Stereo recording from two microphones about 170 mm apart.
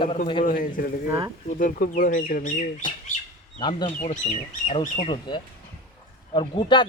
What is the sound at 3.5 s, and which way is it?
Speech, 25° left (ahead or behind).